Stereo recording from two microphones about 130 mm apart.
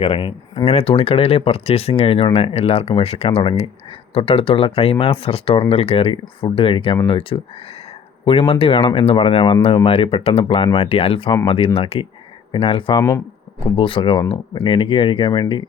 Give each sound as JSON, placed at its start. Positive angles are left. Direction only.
{"t": 0.0, "sound": "speech", "side_deg": 40}
{"t": 0.6, "sound": "speech", "side_deg": 50}
{"t": 13.0, "sound": "speech", "side_deg": 25}
{"t": 13.7, "sound": "speech", "side_deg": 40}